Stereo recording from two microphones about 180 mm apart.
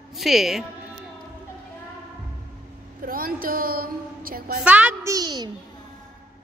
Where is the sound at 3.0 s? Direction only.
50° right (ahead or behind).